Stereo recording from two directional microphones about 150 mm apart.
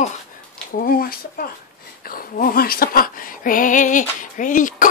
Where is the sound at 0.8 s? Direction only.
75° left (ahead or behind).